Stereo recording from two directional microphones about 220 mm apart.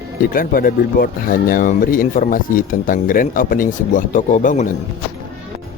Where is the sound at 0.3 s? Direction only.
40° left (ahead or behind).